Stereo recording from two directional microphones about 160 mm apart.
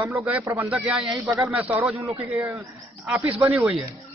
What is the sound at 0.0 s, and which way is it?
A man's voice, 10° right (ahead or behind).